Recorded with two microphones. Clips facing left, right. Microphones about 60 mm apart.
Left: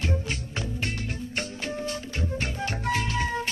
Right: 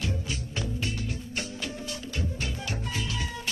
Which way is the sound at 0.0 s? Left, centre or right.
Left.